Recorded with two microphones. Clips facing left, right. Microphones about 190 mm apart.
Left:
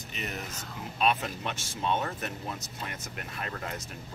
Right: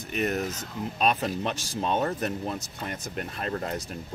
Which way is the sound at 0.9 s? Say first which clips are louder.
Right 2 dB; 35° right (ahead or behind).